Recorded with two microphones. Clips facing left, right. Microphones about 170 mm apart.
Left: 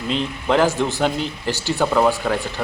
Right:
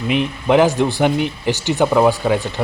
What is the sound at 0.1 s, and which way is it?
Speech, 15° right (ahead or behind).